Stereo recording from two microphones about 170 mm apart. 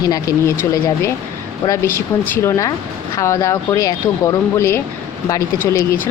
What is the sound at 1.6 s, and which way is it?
A woman's voice, 15° left (ahead or behind).